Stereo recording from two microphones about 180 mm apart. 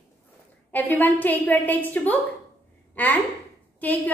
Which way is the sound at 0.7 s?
10° left (ahead or behind).